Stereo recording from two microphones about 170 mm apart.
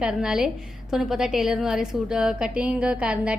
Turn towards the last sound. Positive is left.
turn(degrees=-5)  # may be behind; listen again after turning